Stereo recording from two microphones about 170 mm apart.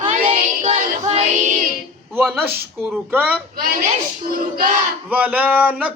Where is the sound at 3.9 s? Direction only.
50° right (ahead or behind).